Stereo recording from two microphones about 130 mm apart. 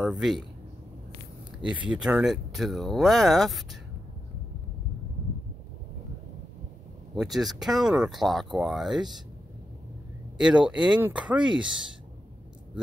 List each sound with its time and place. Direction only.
0.0 s speech: 5° right (ahead or behind)
1.6 s speech: 10° right (ahead or behind)
7.2 s speech: centre (ahead or behind)
10.3 s speech: 5° right (ahead or behind)